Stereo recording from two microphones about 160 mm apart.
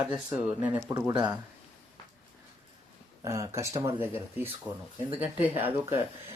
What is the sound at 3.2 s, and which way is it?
Speech, 20° right (ahead or behind).